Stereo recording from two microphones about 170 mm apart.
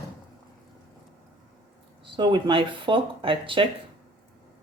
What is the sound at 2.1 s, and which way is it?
Speech, 30° right (ahead or behind).